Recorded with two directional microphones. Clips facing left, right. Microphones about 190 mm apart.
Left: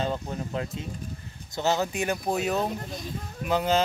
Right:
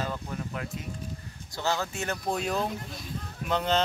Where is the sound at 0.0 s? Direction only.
25° left (ahead or behind).